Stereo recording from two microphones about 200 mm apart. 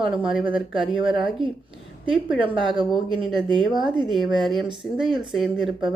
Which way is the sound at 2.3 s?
5° right (ahead or behind).